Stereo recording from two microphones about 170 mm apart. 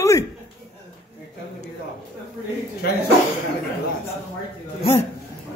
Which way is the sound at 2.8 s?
65° left (ahead or behind).